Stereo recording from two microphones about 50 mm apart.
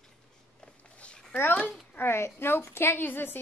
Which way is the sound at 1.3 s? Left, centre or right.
Left.